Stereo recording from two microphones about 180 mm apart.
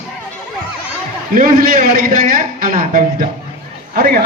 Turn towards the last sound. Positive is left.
turn(degrees=-55)  # may be behind; listen again after turning